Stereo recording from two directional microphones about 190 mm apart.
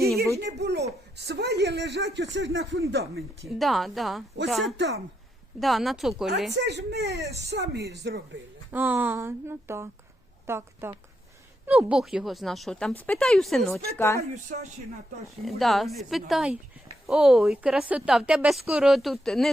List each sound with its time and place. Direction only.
0.3 s a woman's voice: 60° right (ahead or behind); by 2.8 s 85° right
2.9 s a woman's voice: 55° right (ahead or behind)
3.4 s a woman's voice: centre (ahead or behind)
6.5 s a woman's voice: 60° right (ahead or behind)
8.7 s a woman's voice: 10° right (ahead or behind)
14.5 s speech: 40° right (ahead or behind)
15.4 s a woman's voice: centre (ahead or behind)